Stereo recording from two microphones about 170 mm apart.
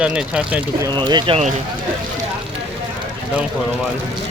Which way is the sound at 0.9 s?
25° right (ahead or behind).